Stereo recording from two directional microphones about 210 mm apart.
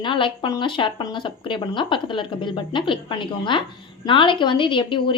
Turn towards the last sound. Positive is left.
turn(degrees=25)  # may be behind; listen again after turning